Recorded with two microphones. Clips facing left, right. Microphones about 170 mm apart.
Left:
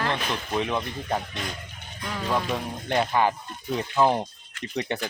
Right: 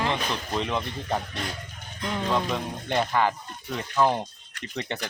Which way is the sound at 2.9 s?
15° left (ahead or behind).